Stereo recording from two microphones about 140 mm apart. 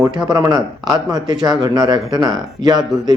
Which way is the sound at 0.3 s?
25° right (ahead or behind).